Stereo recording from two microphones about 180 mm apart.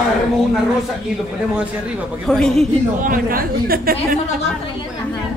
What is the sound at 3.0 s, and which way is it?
Speech, 50° right (ahead or behind).